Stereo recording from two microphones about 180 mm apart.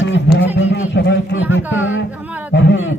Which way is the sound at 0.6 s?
80° left.